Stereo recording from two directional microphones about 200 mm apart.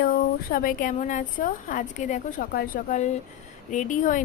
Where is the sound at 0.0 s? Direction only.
45° left (ahead or behind).